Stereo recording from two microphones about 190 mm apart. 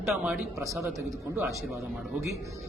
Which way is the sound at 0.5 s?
15° right (ahead or behind).